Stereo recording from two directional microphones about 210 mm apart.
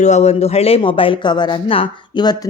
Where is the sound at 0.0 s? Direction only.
35° left (ahead or behind).